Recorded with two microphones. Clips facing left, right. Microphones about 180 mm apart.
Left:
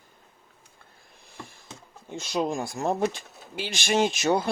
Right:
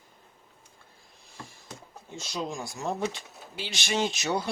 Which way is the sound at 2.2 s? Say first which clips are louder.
Left 7 dB; 55° left (ahead or behind).